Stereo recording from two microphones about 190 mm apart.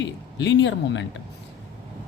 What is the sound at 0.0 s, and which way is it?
A woman's voice, 65° left (ahead or behind).